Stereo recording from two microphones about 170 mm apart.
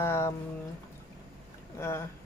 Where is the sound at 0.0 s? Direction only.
15° left (ahead or behind).